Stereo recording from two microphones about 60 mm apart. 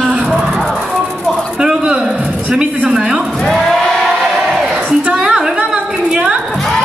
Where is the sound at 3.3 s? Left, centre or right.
Centre.